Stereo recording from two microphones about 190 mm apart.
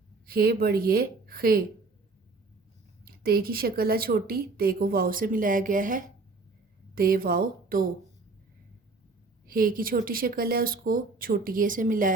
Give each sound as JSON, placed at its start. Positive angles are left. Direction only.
{"t": 0.3, "sound": "a woman's voice", "side_deg": -50}
{"t": 3.0, "sound": "a woman's voice", "side_deg": -50}
{"t": 9.5, "sound": "a woman's voice", "side_deg": -50}